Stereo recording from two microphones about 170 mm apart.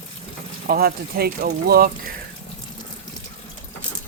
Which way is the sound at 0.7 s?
60° right (ahead or behind).